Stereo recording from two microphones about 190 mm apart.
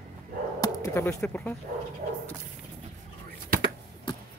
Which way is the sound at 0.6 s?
15° left (ahead or behind).